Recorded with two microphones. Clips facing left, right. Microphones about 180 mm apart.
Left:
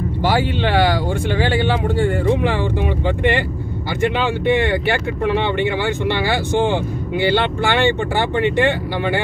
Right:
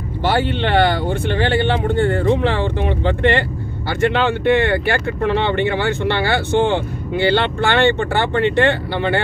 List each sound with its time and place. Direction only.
0.4 s speech: 60° right (ahead or behind)
1.4 s speech: 10° left (ahead or behind)